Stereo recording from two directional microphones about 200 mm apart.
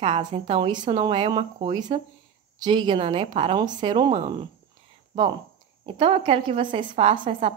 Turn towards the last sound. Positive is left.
turn(degrees=-25)  # may be behind; listen again after turning